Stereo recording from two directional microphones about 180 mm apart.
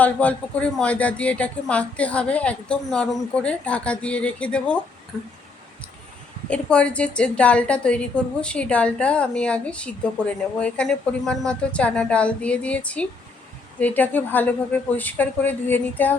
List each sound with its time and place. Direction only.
0.0 s a woman's voice: 10° left (ahead or behind)
6.5 s a woman's voice: 5° left (ahead or behind)